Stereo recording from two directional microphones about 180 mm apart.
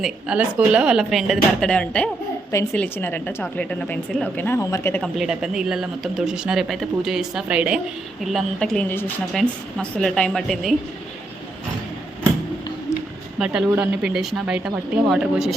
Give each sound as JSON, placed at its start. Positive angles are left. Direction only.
{"t": 0.0, "sound": "a woman's voice", "side_deg": -5}
{"t": 5.1, "sound": "speech", "side_deg": -5}
{"t": 12.9, "sound": "a sound", "side_deg": 15}
{"t": 13.4, "sound": "speech", "side_deg": -5}